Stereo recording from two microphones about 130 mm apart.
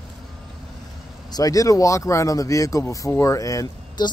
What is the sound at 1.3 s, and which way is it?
Speech, 25° left (ahead or behind).